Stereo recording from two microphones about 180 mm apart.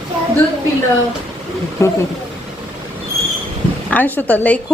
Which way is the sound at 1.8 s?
15° left (ahead or behind).